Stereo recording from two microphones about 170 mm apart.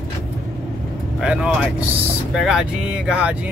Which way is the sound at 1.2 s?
5° right (ahead or behind).